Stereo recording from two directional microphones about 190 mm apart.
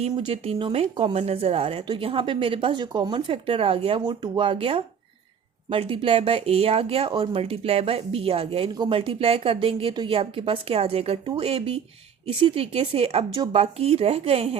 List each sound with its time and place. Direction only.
0.1 s speech: 25° right (ahead or behind)